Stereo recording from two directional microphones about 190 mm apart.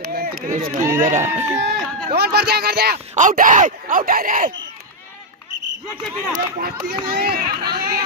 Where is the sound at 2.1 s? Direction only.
55° right (ahead or behind).